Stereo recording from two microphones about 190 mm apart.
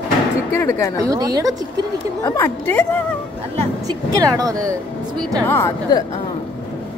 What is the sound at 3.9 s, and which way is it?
Speech, 20° right (ahead or behind).